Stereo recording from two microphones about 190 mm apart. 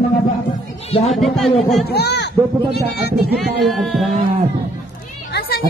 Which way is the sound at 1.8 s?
60° left (ahead or behind).